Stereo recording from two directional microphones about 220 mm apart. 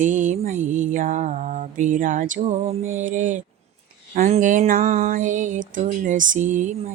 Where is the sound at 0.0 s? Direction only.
35° right (ahead or behind).